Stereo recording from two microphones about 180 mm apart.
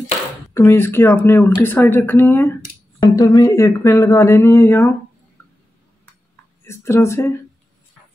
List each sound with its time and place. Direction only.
0.6 s speech: 15° left (ahead or behind)
6.6 s speech: 15° left (ahead or behind)